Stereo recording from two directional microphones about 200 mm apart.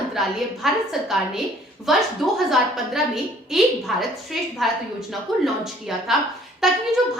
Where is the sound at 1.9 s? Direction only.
Centre (ahead or behind).